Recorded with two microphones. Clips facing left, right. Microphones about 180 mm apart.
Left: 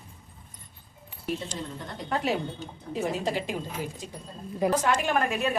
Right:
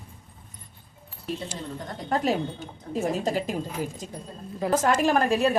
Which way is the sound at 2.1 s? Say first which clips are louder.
Right 3 dB; 40° right (ahead or behind).